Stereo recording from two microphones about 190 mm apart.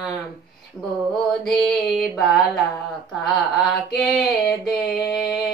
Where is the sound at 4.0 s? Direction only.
Centre (ahead or behind).